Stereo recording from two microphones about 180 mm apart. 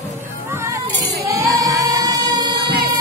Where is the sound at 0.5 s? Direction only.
15° right (ahead or behind).